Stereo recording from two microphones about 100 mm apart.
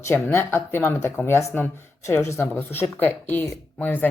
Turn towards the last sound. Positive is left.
turn(degrees=20)  # may be behind; listen again after turning